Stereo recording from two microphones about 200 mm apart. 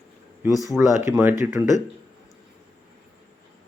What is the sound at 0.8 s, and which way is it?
Speech, 10° right (ahead or behind).